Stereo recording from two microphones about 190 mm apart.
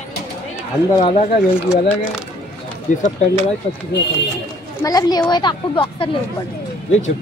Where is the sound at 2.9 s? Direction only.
40° left (ahead or behind).